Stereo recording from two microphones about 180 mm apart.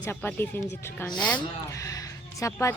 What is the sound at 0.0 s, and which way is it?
Speech, 10° left (ahead or behind).